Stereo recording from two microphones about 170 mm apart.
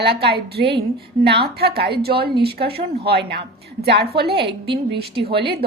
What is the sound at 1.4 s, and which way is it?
A woman's voice, 70° right (ahead or behind).